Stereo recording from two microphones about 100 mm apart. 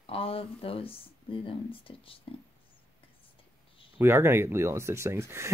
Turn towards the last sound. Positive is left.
turn(degrees=-25)  # may be behind; listen again after turning